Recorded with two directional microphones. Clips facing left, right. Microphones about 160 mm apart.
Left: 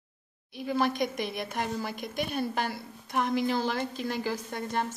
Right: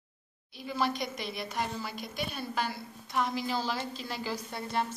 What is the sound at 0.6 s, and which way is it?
A woman's voice, 50° left (ahead or behind).